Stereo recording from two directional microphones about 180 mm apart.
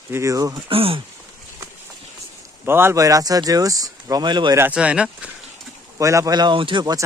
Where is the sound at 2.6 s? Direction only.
15° right (ahead or behind).